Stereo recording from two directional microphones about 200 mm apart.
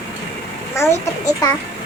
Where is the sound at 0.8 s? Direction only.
15° left (ahead or behind).